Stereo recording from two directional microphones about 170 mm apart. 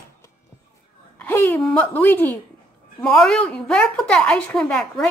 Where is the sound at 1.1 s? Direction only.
10° left (ahead or behind).